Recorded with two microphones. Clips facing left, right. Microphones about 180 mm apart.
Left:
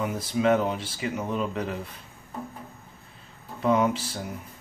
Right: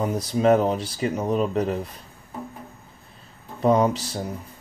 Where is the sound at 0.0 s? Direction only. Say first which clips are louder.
Right 4 dB; 40° right (ahead or behind).